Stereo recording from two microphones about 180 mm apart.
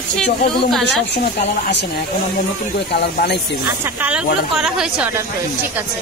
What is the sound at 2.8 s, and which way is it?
Speech, 65° left (ahead or behind).